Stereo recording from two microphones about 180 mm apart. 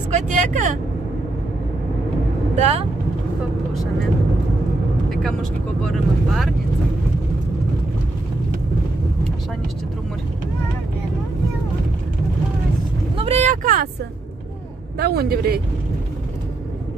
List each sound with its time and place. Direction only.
0.1 s speech: 45° right (ahead or behind)
2.5 s speech: 35° right (ahead or behind)
5.9 s speech: centre (ahead or behind)
13.1 s vehicle: 35° right (ahead or behind)
13.5 s vehicle: 50° right (ahead or behind)
15.0 s speech: 60° right (ahead or behind)